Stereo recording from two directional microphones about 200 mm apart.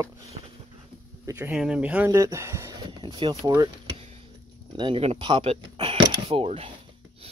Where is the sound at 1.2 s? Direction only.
10° right (ahead or behind); by 3.4 s 25° right (ahead or behind).